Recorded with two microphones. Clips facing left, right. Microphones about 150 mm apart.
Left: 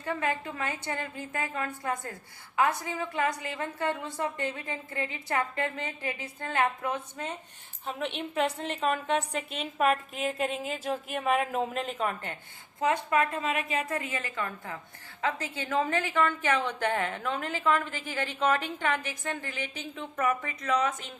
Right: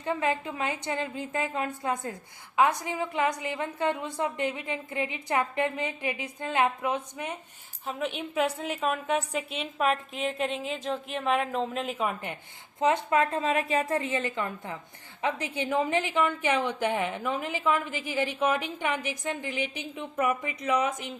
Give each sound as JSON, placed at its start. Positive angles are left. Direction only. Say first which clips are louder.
{"t": 0.0, "sound": "a woman's voice", "louder": "right 3 dB", "side_deg": -20}
{"t": 7.9, "sound": "a woman's voice", "louder": "right 1 dB", "side_deg": 0}
{"t": 12.8, "sound": "a woman's voice", "louder": "right 2 dB", "side_deg": -25}